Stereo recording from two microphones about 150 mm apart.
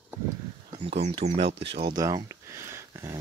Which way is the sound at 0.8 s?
40° right (ahead or behind).